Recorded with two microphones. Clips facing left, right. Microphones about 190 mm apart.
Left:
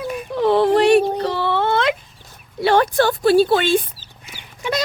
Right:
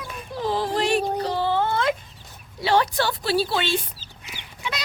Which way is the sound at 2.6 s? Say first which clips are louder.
Left 6 dB; 55° left (ahead or behind).